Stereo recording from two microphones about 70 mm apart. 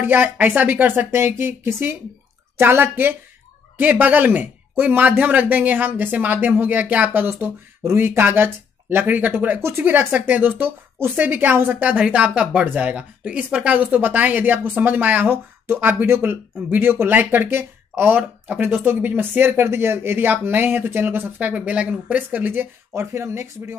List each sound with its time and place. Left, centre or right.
0.0 s speech: right
9.6 s speech: right